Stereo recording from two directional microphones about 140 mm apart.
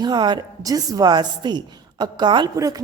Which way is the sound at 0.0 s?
30° right (ahead or behind).